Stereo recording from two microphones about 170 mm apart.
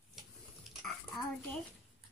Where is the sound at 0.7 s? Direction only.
Centre (ahead or behind).